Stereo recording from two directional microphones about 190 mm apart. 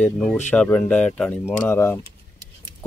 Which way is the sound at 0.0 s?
5° left (ahead or behind).